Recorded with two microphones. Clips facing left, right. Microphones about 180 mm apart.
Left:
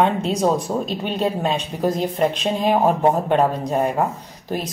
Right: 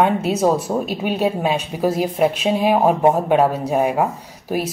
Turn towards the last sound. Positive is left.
turn(degrees=-10)  # may be behind; listen again after turning